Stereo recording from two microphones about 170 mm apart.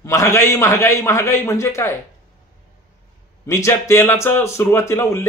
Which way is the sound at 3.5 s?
15° left (ahead or behind).